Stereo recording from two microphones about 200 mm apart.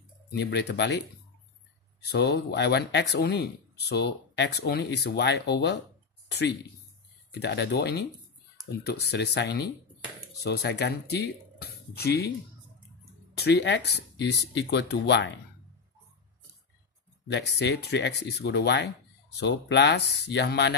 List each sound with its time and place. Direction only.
0.3 s speech: 55° left (ahead or behind)
7.3 s speech: 60° left (ahead or behind)
13.4 s speech: 55° left (ahead or behind)
17.3 s speech: 60° left (ahead or behind)